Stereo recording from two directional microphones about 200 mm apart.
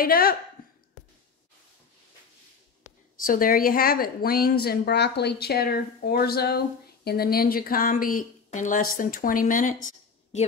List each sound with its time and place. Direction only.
0.0 s speech: 50° left (ahead or behind)
3.3 s a woman's voice: 45° left (ahead or behind)